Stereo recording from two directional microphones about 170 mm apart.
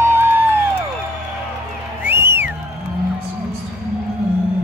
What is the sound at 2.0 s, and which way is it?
Music, 15° right (ahead or behind).